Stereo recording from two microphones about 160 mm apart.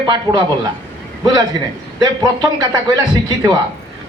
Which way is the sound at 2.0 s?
25° right (ahead or behind).